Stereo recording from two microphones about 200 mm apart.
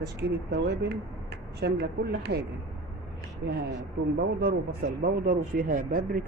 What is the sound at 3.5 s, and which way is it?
Speech, 55° right (ahead or behind).